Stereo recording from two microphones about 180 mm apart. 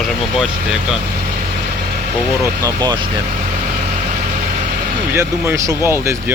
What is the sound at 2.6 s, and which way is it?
Speech, 20° right (ahead or behind).